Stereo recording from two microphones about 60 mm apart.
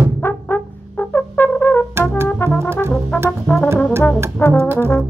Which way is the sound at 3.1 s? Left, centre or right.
Left.